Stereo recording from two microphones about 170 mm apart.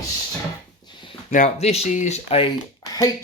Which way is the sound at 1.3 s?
45° left (ahead or behind).